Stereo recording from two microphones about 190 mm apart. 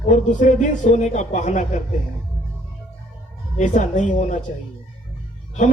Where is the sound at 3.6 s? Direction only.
40° left (ahead or behind).